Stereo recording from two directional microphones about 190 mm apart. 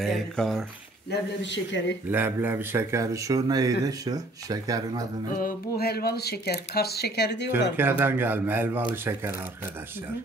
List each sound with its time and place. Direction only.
0.0 s speech: centre (ahead or behind)
1.1 s a man's voice: 70° left (ahead or behind)
2.0 s speech: 10° right (ahead or behind)
5.8 s speech: 55° left (ahead or behind)
7.7 s speech: 10° right (ahead or behind)